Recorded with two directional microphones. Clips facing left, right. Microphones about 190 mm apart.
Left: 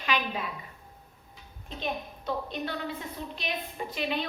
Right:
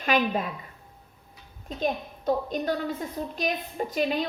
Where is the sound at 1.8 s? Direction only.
45° right (ahead or behind).